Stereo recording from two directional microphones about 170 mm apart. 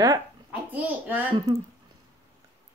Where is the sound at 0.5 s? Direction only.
10° right (ahead or behind).